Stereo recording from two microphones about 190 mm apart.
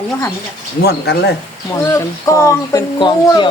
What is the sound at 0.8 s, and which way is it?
Speech, 60° left (ahead or behind).